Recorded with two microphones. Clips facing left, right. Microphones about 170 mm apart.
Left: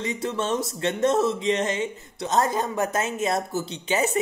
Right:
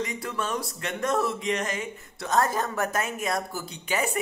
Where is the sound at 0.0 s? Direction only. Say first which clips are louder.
Left 4 dB; 25° left (ahead or behind).